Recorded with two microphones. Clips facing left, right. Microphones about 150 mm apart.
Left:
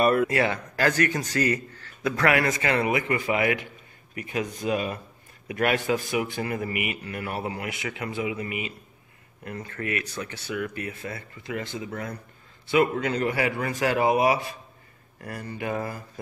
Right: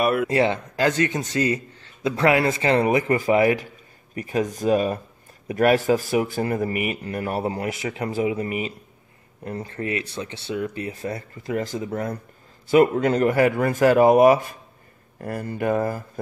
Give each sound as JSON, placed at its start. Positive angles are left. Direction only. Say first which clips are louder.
{"t": 0.0, "sound": "speech", "louder": "even", "side_deg": -5}
{"t": 0.3, "sound": "a man's voice", "louder": "right 4 dB", "side_deg": -25}